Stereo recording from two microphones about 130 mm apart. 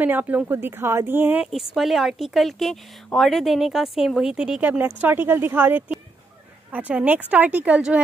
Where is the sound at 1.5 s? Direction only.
Centre (ahead or behind).